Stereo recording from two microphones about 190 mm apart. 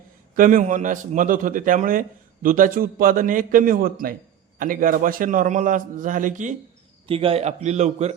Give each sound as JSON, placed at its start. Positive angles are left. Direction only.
{"t": 0.3, "sound": "a man's voice", "side_deg": -45}
{"t": 7.1, "sound": "speech", "side_deg": -30}